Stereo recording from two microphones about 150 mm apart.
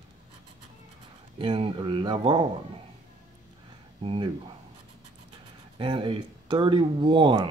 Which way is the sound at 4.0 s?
35° right (ahead or behind).